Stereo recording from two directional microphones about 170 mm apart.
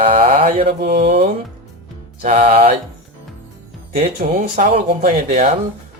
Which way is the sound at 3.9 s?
50° right (ahead or behind).